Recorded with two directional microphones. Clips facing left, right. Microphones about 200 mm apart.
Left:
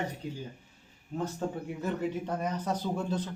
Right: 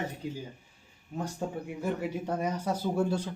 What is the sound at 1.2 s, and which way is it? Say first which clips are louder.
Speech: left 1 dB; 10° right (ahead or behind).